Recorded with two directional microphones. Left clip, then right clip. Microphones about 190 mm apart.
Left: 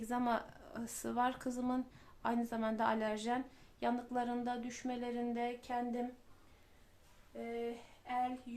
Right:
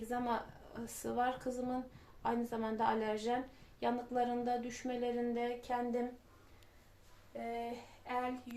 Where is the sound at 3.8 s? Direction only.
15° left (ahead or behind).